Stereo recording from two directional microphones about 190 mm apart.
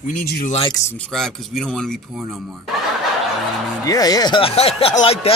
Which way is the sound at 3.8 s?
20° left (ahead or behind).